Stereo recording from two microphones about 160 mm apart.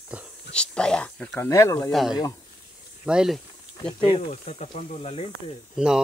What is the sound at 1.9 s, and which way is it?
Speech, centre (ahead or behind).